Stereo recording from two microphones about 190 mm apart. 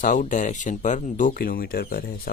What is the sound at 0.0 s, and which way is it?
Speech, 45° left (ahead or behind).